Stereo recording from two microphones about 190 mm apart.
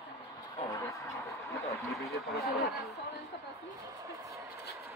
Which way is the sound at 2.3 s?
55° left (ahead or behind).